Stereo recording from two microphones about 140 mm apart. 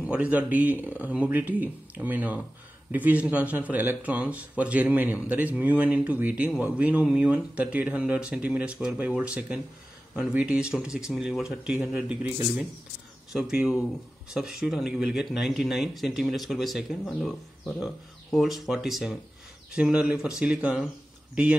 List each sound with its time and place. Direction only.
0.0 s speech: 10° right (ahead or behind)